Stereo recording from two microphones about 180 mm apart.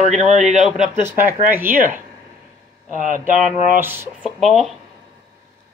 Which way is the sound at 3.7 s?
10° right (ahead or behind).